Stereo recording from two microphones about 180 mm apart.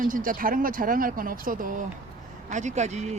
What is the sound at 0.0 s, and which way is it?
Speech, 50° right (ahead or behind).